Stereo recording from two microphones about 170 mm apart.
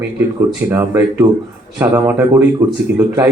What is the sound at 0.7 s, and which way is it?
A man's voice, 15° right (ahead or behind).